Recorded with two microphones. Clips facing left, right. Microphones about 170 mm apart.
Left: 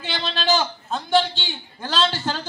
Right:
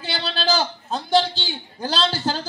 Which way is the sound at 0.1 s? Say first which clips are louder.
Left 1 dB; 35° right (ahead or behind).